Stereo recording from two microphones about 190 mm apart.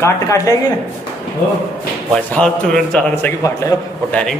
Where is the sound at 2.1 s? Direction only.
5° left (ahead or behind).